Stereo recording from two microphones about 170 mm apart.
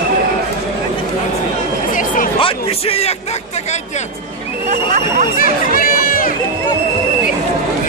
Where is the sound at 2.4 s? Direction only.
35° left (ahead or behind).